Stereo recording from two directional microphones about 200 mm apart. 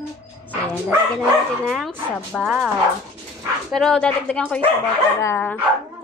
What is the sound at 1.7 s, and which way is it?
Speech, centre (ahead or behind).